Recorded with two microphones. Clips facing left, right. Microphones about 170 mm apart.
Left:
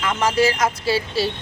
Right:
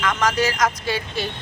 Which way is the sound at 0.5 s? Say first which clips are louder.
Left 1 dB; 30° left (ahead or behind).